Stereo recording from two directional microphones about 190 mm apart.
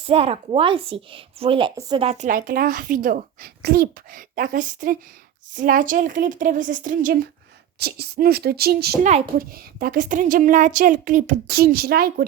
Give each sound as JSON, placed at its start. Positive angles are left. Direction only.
{"t": 0.0, "sound": "a woman's voice", "side_deg": -30}
{"t": 11.4, "sound": "a woman's voice", "side_deg": -55}